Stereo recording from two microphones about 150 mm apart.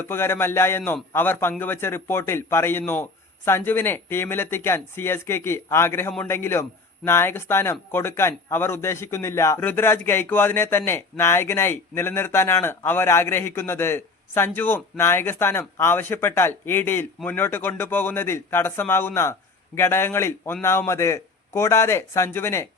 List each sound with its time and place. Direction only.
0.0 s a man's voice: 15° left (ahead or behind)